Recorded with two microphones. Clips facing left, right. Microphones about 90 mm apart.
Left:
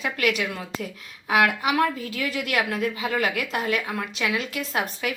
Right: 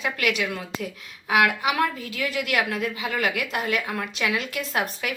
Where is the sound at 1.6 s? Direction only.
30° left (ahead or behind).